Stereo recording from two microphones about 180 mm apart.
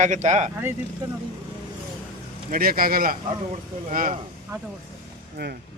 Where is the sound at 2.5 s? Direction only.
55° right (ahead or behind).